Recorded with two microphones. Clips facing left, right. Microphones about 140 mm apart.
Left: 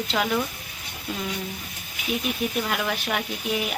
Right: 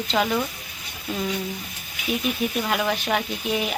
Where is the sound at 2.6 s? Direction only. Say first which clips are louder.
Right 3 dB; 5° right (ahead or behind).